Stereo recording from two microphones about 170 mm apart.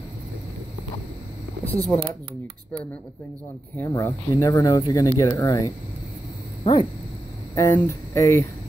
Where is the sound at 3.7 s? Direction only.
15° left (ahead or behind).